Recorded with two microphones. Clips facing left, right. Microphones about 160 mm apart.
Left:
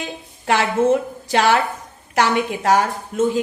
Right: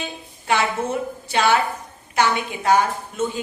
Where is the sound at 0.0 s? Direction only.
90° left.